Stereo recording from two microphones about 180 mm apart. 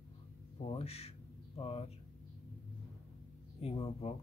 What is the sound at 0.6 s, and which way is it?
Speech, 35° left (ahead or behind).